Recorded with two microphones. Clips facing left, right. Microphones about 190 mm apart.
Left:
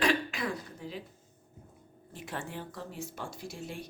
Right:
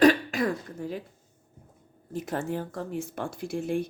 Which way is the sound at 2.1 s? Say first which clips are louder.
Right 9 dB; 40° right (ahead or behind).